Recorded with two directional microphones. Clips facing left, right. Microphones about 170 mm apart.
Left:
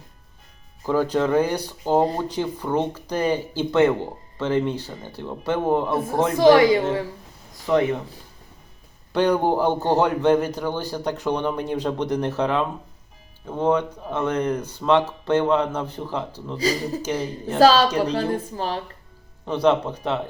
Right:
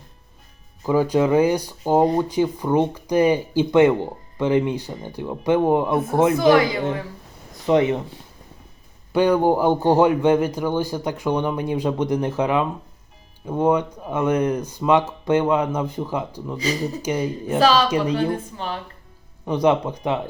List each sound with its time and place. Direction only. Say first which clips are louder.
0.9 s speech: right 3 dB; 10° right (ahead or behind)
6.3 s speech: left 7 dB; 30° left (ahead or behind)
7.7 s speech: right 2 dB; 20° right (ahead or behind)
9.1 s speech: right 2 dB; 10° right (ahead or behind)
17.6 s speech: left 2 dB; 40° left (ahead or behind)
19.5 s speech: right 1 dB; 15° right (ahead or behind)